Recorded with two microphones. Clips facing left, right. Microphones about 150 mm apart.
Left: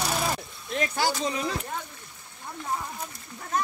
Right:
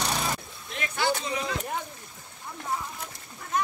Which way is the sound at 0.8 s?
35° left (ahead or behind).